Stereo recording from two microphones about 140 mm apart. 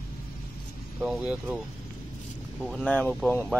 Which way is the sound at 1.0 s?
5° right (ahead or behind).